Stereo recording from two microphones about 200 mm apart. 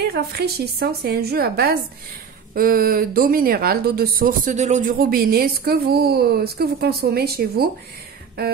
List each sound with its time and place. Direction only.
0.0 s speech: 55° right (ahead or behind)